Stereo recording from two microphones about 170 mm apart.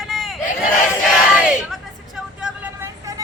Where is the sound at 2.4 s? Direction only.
10° right (ahead or behind).